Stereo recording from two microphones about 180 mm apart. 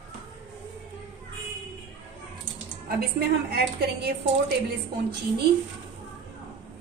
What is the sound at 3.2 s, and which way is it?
Speech, 60° right (ahead or behind).